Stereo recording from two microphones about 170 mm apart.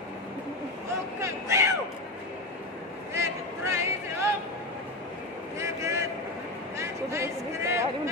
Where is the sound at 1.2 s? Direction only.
15° right (ahead or behind).